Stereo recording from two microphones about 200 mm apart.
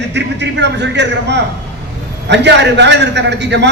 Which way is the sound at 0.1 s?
60° right (ahead or behind).